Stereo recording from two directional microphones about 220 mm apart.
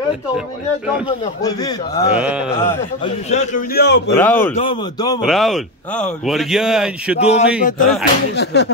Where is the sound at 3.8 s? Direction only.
50° left (ahead or behind).